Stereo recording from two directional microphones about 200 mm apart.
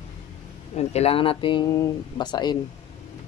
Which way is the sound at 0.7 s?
30° left (ahead or behind).